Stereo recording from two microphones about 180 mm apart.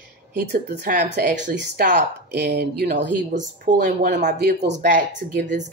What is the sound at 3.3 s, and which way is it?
Speech, 45° right (ahead or behind).